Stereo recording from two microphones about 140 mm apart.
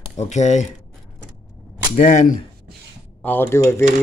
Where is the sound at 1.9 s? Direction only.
60° left (ahead or behind).